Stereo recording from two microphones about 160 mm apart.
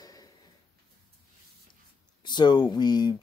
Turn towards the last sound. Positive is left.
turn(degrees=25)  # may be behind; listen again after turning